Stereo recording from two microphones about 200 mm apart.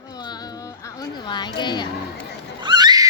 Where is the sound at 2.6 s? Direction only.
20° right (ahead or behind).